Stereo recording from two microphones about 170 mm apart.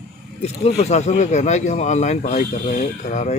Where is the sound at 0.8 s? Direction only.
40° left (ahead or behind).